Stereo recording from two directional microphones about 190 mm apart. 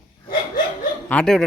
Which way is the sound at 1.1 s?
5° left (ahead or behind).